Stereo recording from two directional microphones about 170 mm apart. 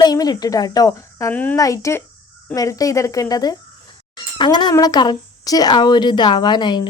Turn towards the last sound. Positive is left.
turn(degrees=25)  # may be behind; listen again after turning